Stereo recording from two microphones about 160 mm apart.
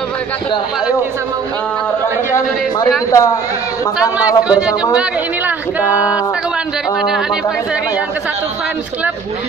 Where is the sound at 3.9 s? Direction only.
5° right (ahead or behind).